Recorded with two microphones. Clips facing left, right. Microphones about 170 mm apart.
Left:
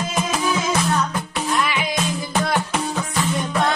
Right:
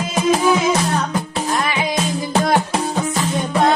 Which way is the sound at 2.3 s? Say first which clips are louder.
Right 5 dB; 35° right (ahead or behind).